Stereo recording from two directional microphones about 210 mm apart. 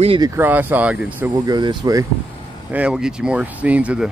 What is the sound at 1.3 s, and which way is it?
Speech, 20° right (ahead or behind).